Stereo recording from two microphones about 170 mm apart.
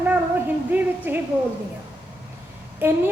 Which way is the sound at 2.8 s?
15° right (ahead or behind).